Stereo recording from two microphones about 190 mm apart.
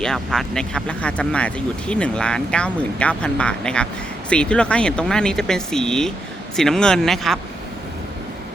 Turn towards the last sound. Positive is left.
turn(degrees=0)  # may be behind; listen again after turning